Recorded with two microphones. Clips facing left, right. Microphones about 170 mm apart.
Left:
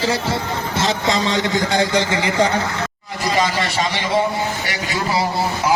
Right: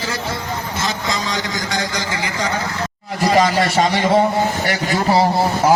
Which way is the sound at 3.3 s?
45° right (ahead or behind).